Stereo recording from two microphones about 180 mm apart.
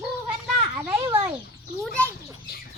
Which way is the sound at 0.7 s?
10° right (ahead or behind).